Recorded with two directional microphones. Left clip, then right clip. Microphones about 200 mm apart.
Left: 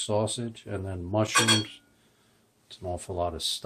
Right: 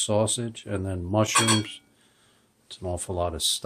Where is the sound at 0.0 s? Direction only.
45° right (ahead or behind).